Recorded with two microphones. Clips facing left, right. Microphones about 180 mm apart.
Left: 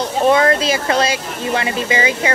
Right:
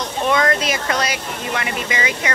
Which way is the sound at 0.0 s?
30° left (ahead or behind).